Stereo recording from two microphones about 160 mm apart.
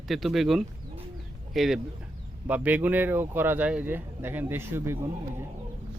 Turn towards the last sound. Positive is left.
turn(degrees=-15)  # may be behind; listen again after turning